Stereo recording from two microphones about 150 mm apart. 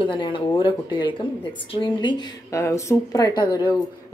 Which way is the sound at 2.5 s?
20° left (ahead or behind).